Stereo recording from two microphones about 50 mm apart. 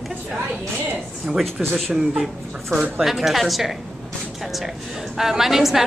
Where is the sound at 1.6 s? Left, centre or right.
Centre.